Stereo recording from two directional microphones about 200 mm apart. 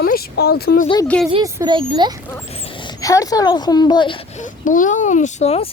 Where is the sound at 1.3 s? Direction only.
15° right (ahead or behind).